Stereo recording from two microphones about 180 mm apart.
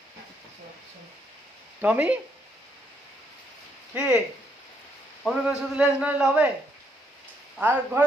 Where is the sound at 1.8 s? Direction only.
10° right (ahead or behind).